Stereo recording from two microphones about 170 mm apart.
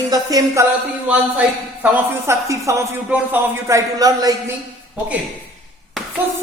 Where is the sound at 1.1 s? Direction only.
10° right (ahead or behind).